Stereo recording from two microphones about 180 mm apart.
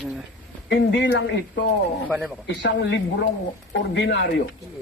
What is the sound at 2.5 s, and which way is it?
Speech, 75° left (ahead or behind).